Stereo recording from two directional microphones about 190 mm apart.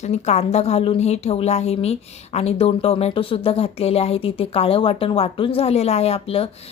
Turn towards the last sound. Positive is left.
turn(degrees=30)  # may be behind; listen again after turning